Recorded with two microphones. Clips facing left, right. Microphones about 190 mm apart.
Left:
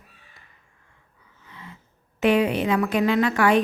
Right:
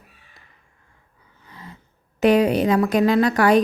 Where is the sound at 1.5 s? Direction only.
40° right (ahead or behind).